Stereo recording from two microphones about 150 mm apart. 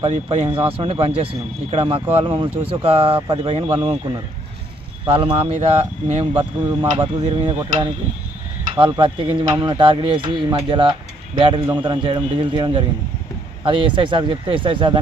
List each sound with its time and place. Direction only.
0.0 s speech: 35° right (ahead or behind)
6.8 s speech: 25° right (ahead or behind)